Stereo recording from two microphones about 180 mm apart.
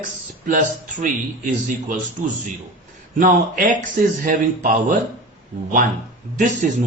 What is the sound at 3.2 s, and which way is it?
Speech, 50° right (ahead or behind).